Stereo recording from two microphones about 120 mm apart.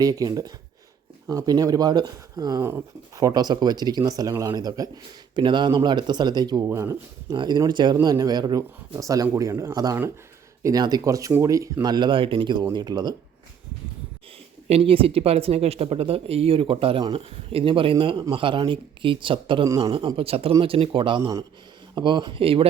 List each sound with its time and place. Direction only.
0.0 s speech: 30° right (ahead or behind)
7.3 s speech: 35° right (ahead or behind)
14.7 s a man's voice: 50° right (ahead or behind)
19.6 s speech: 25° right (ahead or behind)
20.1 s a man's voice: 55° right (ahead or behind)